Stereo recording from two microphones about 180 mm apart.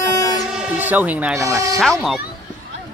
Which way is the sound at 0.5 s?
10° right (ahead or behind).